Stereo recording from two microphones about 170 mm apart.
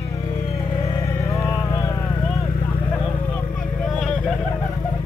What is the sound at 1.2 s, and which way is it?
Vehicle, 20° left (ahead or behind).